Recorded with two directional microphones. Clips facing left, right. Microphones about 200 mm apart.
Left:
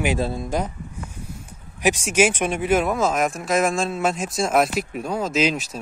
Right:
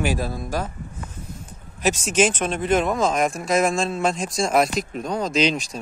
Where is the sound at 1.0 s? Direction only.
10° left (ahead or behind).